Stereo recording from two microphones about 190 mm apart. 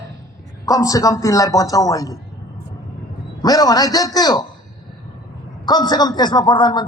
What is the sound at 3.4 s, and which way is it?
A man's voice, 20° left (ahead or behind).